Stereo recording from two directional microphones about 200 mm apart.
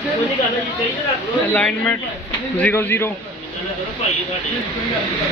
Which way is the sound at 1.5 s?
5° left (ahead or behind).